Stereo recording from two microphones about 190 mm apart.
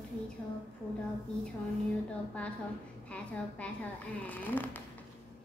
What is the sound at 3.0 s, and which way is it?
A woman's voice, 5° left (ahead or behind).